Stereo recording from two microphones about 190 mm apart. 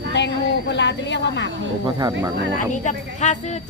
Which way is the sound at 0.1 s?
65° left (ahead or behind).